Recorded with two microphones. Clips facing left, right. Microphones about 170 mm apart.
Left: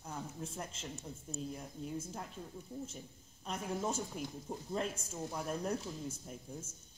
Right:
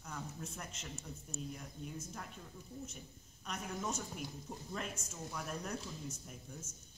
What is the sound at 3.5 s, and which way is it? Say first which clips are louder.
Speech: left 4 dB; 30° left (ahead or behind).